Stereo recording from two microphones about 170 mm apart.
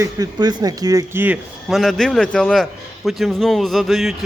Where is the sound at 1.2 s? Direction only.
5° right (ahead or behind).